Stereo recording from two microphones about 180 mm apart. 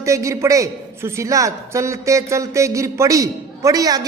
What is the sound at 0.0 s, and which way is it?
A man's voice, 15° right (ahead or behind).